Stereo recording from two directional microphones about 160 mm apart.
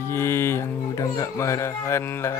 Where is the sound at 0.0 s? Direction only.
15° left (ahead or behind).